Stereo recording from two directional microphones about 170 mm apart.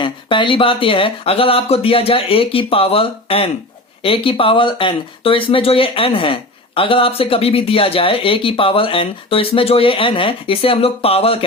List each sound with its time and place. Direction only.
0.0 s speech: 30° left (ahead or behind)